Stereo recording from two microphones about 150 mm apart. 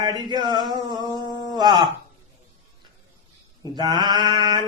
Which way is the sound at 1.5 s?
30° right (ahead or behind).